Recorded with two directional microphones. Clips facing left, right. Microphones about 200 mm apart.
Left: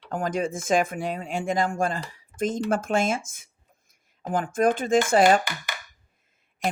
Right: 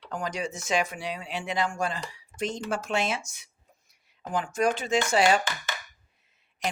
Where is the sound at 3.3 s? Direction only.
50° left (ahead or behind).